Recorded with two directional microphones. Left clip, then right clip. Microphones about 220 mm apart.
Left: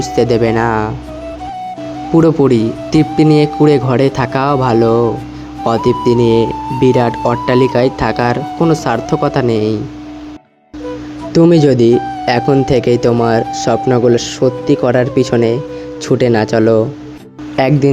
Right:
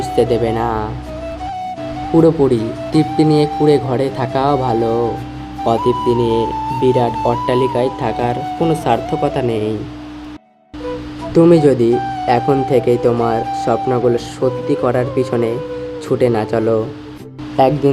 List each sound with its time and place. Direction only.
0.2 s speech: 25° left (ahead or behind)
2.1 s speech: 25° left (ahead or behind)
11.3 s speech: 20° left (ahead or behind)
11.9 s speech: centre (ahead or behind)
12.2 s speech: 25° left (ahead or behind)